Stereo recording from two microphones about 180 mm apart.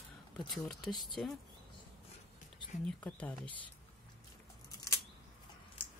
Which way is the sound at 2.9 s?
5° left (ahead or behind).